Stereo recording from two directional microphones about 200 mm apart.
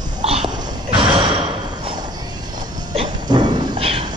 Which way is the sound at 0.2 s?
30° right (ahead or behind).